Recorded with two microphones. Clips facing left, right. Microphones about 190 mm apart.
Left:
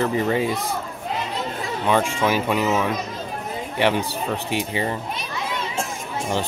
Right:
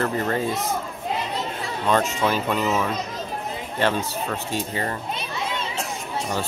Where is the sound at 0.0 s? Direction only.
10° left (ahead or behind).